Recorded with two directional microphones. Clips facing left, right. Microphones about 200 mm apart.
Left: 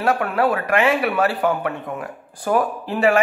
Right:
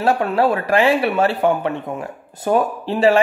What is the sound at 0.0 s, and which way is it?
Speech, 25° right (ahead or behind).